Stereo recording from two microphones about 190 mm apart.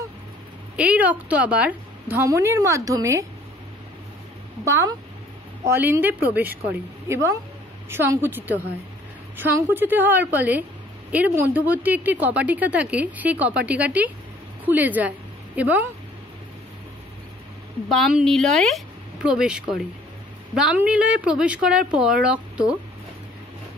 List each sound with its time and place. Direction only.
0.7 s speech: 5° right (ahead or behind)
4.6 s a woman's voice: 15° right (ahead or behind)
17.8 s a woman's voice: centre (ahead or behind)